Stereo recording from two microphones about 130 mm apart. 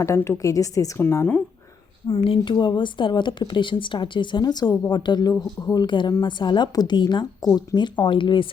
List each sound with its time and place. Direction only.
0.0 s a woman's voice: 20° left (ahead or behind)
2.0 s speech: 45° left (ahead or behind)